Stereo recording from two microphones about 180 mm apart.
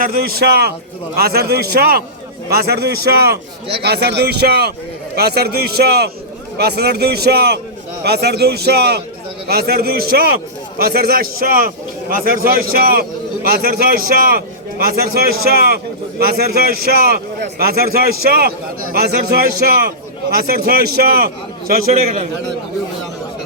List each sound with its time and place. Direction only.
0.0 s a man's voice: 55° right (ahead or behind)